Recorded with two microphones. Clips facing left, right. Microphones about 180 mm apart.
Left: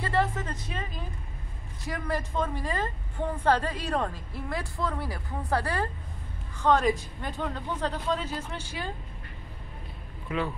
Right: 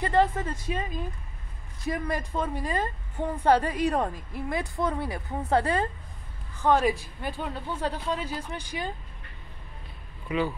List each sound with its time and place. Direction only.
0.0 s a woman's voice: 20° right (ahead or behind)
1.9 s a woman's voice: 15° right (ahead or behind)
6.6 s a woman's voice: 10° right (ahead or behind)
10.2 s speech: 5° right (ahead or behind)